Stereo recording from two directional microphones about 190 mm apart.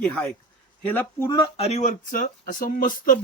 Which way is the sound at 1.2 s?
25° left (ahead or behind).